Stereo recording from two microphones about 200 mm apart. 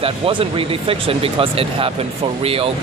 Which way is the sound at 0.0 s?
25° right (ahead or behind).